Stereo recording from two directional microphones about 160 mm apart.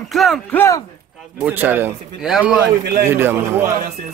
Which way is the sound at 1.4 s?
10° right (ahead or behind).